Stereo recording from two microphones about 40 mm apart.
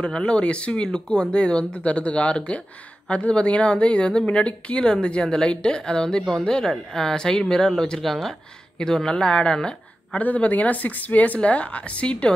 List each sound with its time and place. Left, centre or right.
0.0 s speech: left
8.0 s speech: centre
8.7 s speech: centre
10.1 s speech: left